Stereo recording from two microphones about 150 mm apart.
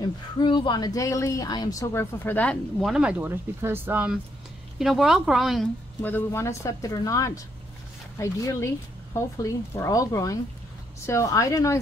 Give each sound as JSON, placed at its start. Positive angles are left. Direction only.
{"t": 0.0, "sound": "speech", "side_deg": 30}
{"t": 6.0, "sound": "speech", "side_deg": 15}